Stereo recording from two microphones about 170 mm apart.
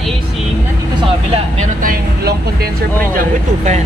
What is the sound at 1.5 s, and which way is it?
Speech, 55° right (ahead or behind).